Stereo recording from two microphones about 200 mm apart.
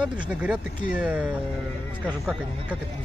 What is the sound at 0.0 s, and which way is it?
Speech, 5° right (ahead or behind).